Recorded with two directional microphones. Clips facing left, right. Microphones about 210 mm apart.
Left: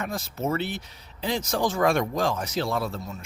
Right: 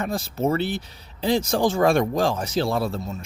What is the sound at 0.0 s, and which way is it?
Speech, 30° right (ahead or behind).